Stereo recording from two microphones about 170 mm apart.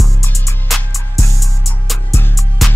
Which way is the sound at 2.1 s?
15° left (ahead or behind).